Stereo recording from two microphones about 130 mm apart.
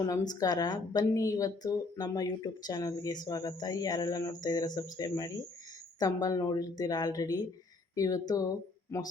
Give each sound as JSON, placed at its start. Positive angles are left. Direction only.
{"t": 0.0, "sound": "a woman's voice", "side_deg": 30}